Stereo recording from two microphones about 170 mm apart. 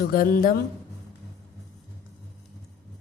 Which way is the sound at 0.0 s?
55° left (ahead or behind).